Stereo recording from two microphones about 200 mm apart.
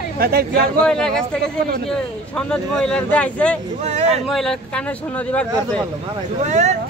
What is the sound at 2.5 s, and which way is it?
Speech, 5° left (ahead or behind).